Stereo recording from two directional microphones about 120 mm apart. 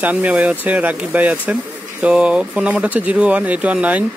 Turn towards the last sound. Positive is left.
turn(degrees=-10)  # may be behind; listen again after turning